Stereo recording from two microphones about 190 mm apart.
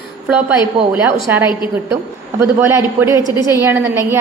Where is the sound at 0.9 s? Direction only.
10° right (ahead or behind).